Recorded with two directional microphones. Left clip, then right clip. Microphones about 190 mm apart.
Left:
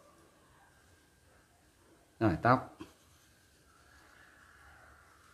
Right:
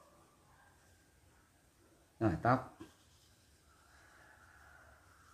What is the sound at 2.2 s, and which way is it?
Speech, 25° left (ahead or behind).